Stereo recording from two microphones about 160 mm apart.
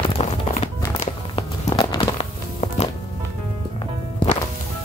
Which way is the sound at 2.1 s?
40° left (ahead or behind).